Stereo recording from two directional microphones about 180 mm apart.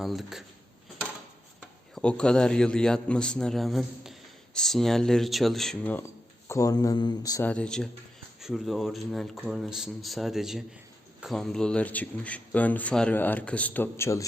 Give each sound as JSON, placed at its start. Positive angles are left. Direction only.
{"t": 0.0, "sound": "a man's voice", "side_deg": 0}
{"t": 2.0, "sound": "a man's voice", "side_deg": 5}
{"t": 7.4, "sound": "a man's voice", "side_deg": 5}